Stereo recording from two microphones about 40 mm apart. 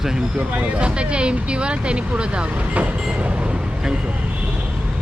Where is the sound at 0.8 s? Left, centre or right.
Right.